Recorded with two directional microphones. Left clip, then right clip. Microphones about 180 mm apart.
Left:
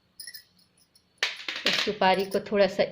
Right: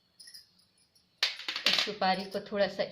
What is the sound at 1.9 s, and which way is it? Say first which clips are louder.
Speech: left 7 dB; 35° left (ahead or behind).